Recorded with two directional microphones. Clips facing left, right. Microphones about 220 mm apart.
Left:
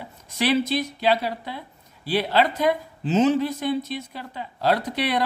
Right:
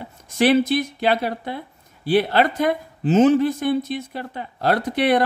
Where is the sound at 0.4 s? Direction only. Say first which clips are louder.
Right 5 dB; 50° right (ahead or behind).